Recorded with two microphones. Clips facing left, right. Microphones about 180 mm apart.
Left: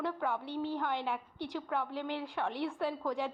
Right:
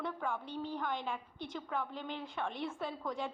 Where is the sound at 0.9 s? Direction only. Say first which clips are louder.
Left 3 dB; 65° left (ahead or behind).